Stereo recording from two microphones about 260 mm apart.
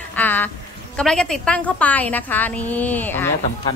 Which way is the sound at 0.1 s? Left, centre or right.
Centre.